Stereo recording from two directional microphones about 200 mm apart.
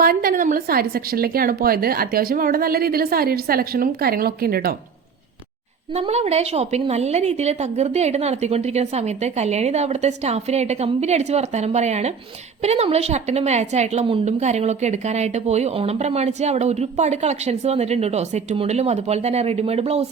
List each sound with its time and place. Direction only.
0.0 s a woman's voice: 45° right (ahead or behind)
5.9 s a woman's voice: 30° right (ahead or behind)